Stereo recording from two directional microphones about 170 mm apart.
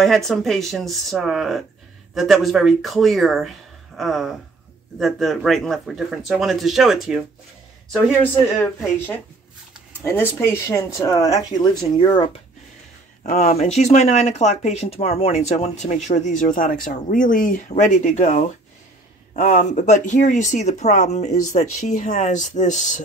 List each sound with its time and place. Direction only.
0.0 s speech: centre (ahead or behind)
8.5 s speech: 10° left (ahead or behind); by 12.4 s 30° left (ahead or behind)
13.2 s speech: 40° left (ahead or behind)